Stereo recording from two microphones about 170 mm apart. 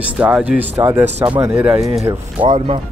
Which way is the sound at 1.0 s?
40° right (ahead or behind).